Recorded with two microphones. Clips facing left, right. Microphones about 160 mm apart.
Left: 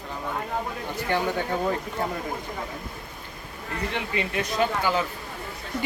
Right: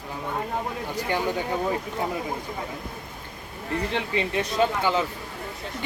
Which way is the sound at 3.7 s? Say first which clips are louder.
Right 3 dB; 30° right (ahead or behind).